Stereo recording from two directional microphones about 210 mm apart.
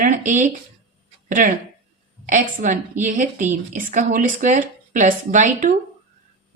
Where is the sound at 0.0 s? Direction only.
40° right (ahead or behind).